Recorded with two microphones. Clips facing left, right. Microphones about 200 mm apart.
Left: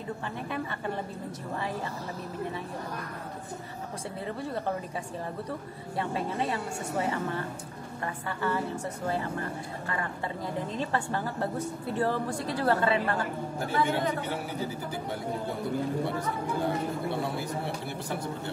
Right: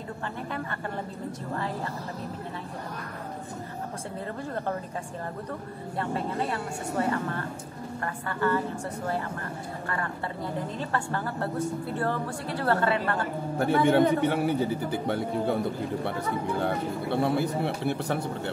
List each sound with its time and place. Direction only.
5.9 s speech: 15° left (ahead or behind)
10.9 s speech: 15° left (ahead or behind)
12.6 s speech: 20° left (ahead or behind)
13.6 s a man's voice: 65° right (ahead or behind)
16.6 s a man's voice: 60° right (ahead or behind)